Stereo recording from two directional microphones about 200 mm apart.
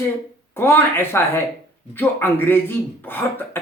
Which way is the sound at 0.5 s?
10° left (ahead or behind).